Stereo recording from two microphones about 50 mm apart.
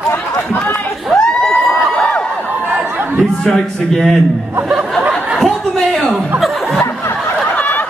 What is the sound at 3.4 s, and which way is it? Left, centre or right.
Speech, centre.